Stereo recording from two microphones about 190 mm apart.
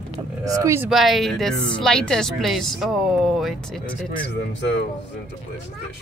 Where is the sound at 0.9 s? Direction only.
Centre (ahead or behind).